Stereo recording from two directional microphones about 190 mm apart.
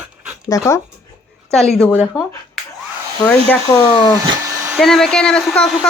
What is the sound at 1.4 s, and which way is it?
Speech, 5° left (ahead or behind).